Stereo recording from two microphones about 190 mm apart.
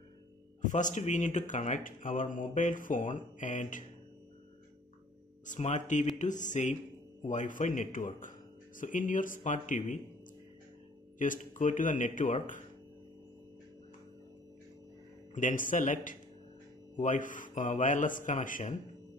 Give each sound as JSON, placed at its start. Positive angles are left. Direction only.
{"t": 0.6, "sound": "speech", "side_deg": 40}
{"t": 5.5, "sound": "speech", "side_deg": 40}
{"t": 11.1, "sound": "speech", "side_deg": 45}
{"t": 15.3, "sound": "speech", "side_deg": 45}